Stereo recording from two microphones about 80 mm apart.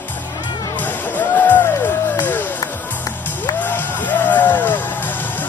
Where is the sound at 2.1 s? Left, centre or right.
Left.